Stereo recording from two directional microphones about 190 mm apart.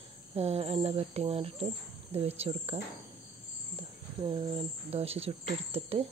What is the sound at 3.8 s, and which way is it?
Speech, 25° right (ahead or behind).